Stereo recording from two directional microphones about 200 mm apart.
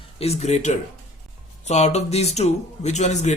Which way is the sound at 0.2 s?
30° left (ahead or behind).